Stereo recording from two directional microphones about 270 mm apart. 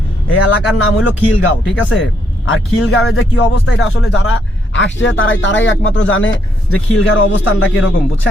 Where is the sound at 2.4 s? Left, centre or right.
Left.